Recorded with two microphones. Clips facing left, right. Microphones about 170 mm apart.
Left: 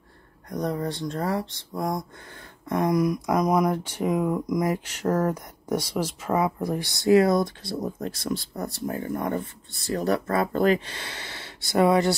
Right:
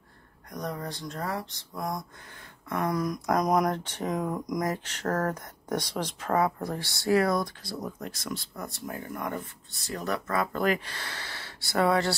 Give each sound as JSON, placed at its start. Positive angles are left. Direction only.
{"t": 0.5, "sound": "speech", "side_deg": 30}
{"t": 2.8, "sound": "speech", "side_deg": 15}